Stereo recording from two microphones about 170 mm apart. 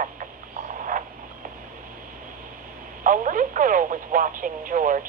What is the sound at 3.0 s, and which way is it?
Radio, 50° right (ahead or behind).